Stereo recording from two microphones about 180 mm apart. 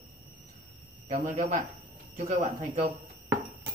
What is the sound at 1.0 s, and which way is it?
Speech, 45° right (ahead or behind).